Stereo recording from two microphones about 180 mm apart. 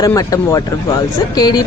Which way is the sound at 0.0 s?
20° left (ahead or behind).